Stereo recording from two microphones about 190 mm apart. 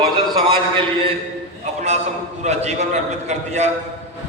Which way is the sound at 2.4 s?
35° right (ahead or behind).